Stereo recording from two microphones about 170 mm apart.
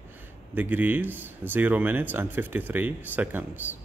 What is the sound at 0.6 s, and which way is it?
Speech, 10° right (ahead or behind).